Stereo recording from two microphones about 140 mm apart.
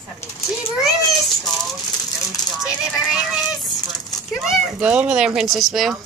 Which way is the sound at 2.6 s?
5° right (ahead or behind).